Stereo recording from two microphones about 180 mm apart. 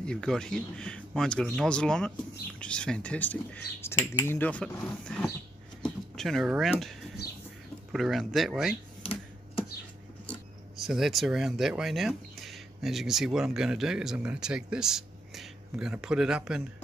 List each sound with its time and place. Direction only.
0.0 s speech: 5° left (ahead or behind)
9.0 s computer keyboard: 30° left (ahead or behind)
10.8 s speech: centre (ahead or behind)